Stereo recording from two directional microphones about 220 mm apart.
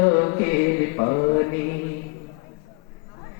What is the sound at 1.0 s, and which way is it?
Speech, 25° left (ahead or behind).